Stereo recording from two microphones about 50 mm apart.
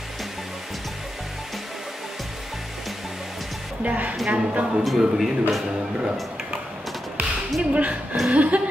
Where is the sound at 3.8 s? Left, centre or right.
Right.